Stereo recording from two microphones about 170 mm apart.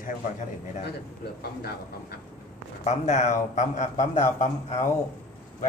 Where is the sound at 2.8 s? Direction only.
45° left (ahead or behind).